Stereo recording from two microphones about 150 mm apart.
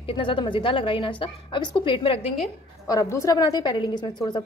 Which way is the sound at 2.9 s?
20° left (ahead or behind).